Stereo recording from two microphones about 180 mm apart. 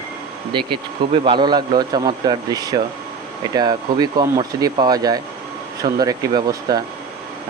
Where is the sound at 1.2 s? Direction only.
25° right (ahead or behind).